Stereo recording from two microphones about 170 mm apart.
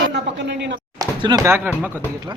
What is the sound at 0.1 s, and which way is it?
Speech, 90° right.